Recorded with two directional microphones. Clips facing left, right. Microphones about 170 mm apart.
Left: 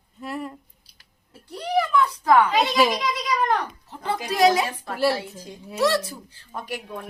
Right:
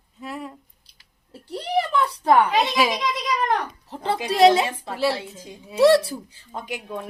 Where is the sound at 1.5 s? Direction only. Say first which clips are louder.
Left 1 dB; 30° right (ahead or behind).